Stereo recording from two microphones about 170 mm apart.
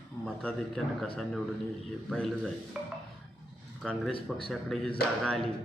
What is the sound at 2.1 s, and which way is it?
Speech, 5° left (ahead or behind).